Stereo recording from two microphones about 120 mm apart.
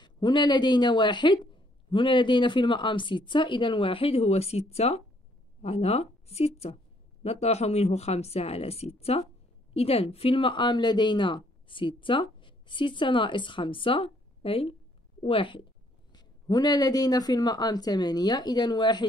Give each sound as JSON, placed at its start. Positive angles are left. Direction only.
{"t": 0.0, "sound": "a woman's voice", "side_deg": 40}
{"t": 16.1, "sound": "speech", "side_deg": 35}